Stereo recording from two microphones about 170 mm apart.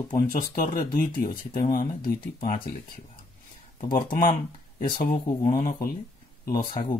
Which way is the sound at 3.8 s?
55° left (ahead or behind).